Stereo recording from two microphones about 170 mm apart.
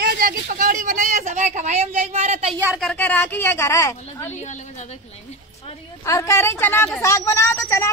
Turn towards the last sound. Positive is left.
turn(degrees=15)  # may be behind; listen again after turning